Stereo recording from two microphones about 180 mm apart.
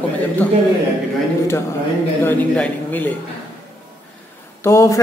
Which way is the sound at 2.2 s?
10° left (ahead or behind).